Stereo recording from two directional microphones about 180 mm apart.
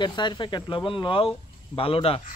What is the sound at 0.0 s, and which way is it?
A child's voice, 25° left (ahead or behind).